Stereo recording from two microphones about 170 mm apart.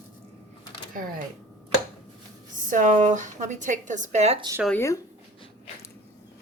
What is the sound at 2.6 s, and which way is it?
A woman's voice, 50° right (ahead or behind).